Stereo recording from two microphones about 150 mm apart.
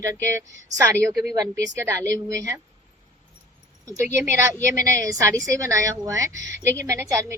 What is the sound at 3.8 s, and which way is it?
A woman's voice, 20° right (ahead or behind).